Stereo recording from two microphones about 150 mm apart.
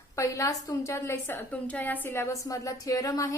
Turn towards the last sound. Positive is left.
turn(degrees=20)  # may be behind; listen again after turning